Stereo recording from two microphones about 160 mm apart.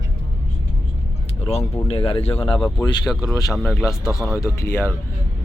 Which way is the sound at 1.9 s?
35° left (ahead or behind).